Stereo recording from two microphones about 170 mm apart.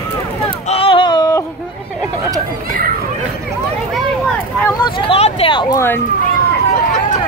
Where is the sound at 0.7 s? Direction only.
35° left (ahead or behind).